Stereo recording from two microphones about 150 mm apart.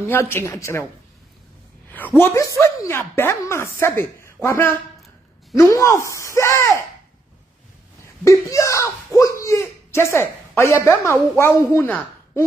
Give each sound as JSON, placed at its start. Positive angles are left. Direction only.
{"t": 0.0, "sound": "speech", "side_deg": 15}
{"t": 2.1, "sound": "speech", "side_deg": 20}
{"t": 8.2, "sound": "a sound", "side_deg": 20}
{"t": 10.7, "sound": "a woman's voice", "side_deg": 15}